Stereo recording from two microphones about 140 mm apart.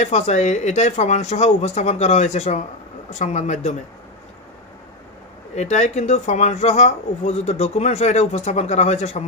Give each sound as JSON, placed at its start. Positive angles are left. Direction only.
{"t": 0.0, "sound": "speech", "side_deg": 55}
{"t": 5.6, "sound": "speech", "side_deg": 55}